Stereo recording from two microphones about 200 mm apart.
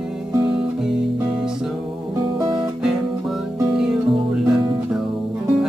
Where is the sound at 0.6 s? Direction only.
5° right (ahead or behind).